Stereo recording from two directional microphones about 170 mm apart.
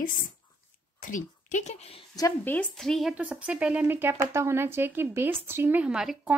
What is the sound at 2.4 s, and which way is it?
Speech, 10° left (ahead or behind).